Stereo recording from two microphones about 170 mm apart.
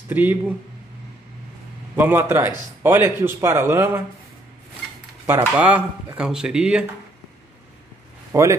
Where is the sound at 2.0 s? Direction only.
15° right (ahead or behind).